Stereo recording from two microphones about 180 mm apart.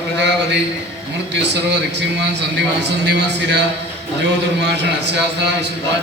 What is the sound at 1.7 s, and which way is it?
Speech, 70° right (ahead or behind).